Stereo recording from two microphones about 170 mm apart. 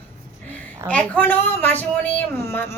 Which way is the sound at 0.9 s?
10° left (ahead or behind).